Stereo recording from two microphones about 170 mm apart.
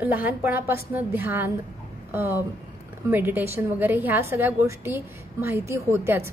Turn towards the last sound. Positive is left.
turn(degrees=-15)  # may be behind; listen again after turning